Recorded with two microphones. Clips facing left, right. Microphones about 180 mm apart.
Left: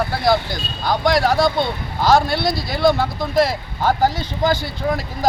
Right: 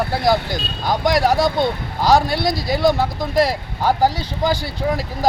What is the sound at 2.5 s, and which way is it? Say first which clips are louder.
Speech: even; 40° right (ahead or behind).